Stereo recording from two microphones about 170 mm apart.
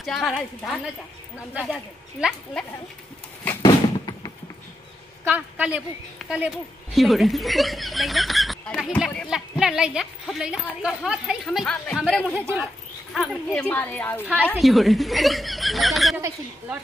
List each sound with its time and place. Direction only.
0.0 s a woman's voice: centre (ahead or behind)
2.1 s a woman's voice: 5° right (ahead or behind)
3.6 s a sound: 25° left (ahead or behind)
5.2 s a woman's voice: 10° right (ahead or behind)
12.4 s a woman's voice: 10° right (ahead or behind)
13.1 s speech: centre (ahead or behind)
14.2 s a woman's voice: 10° right (ahead or behind)